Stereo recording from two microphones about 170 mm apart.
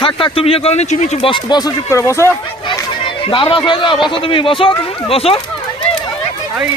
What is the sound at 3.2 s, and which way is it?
A man's voice, 30° left (ahead or behind).